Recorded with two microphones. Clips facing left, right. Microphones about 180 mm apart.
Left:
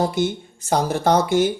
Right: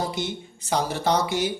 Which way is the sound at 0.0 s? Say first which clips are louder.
Left 7 dB; 50° left (ahead or behind).